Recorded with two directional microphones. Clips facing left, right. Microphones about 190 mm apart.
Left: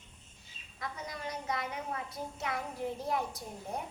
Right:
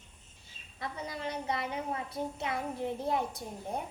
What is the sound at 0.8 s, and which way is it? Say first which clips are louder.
A woman's voice: right 3 dB; 30° right (ahead or behind).